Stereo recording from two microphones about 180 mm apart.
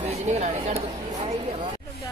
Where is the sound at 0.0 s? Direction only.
35° right (ahead or behind).